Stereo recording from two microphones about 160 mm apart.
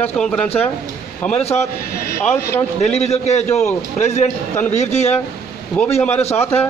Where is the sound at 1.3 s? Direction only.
40° left (ahead or behind).